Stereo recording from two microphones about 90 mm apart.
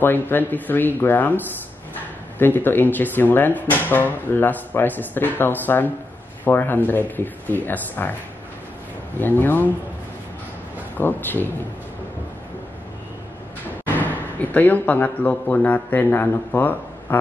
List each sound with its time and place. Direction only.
0.0 s speech: 20° left (ahead or behind)
9.2 s speech: 20° left (ahead or behind)
11.0 s speech: 20° left (ahead or behind)
13.9 s speech: 20° left (ahead or behind)